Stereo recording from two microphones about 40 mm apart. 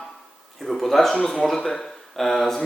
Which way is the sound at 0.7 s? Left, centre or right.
Centre.